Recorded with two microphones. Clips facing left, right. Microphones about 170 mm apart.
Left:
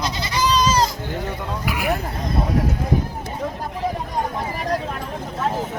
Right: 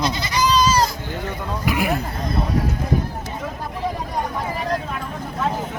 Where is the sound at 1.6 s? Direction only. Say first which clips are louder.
Right 2 dB; 5° left (ahead or behind).